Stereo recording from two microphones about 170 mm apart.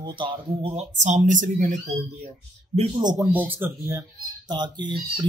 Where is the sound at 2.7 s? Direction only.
30° right (ahead or behind).